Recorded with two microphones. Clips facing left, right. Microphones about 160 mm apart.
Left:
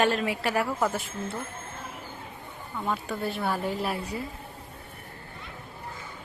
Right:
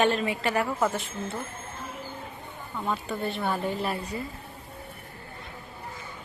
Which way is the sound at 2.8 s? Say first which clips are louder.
Even; centre (ahead or behind).